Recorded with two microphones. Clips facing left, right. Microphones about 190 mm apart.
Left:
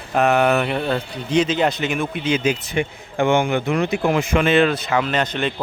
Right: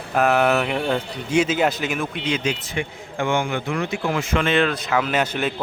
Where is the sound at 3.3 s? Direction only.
20° left (ahead or behind).